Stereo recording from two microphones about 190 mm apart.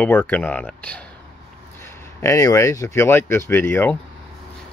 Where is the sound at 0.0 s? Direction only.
10° left (ahead or behind).